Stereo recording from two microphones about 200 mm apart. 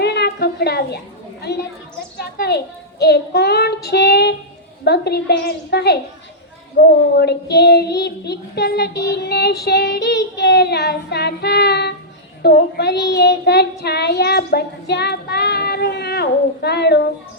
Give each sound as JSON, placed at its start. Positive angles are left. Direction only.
{"t": 0.0, "sound": "a sound", "side_deg": 55}
{"t": 1.5, "sound": "child singing", "side_deg": 55}
{"t": 2.1, "sound": "a child's voice", "side_deg": 55}
{"t": 3.0, "sound": "child singing", "side_deg": 55}